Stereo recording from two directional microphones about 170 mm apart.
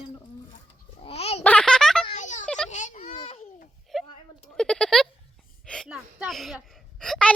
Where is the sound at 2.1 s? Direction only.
45° left (ahead or behind).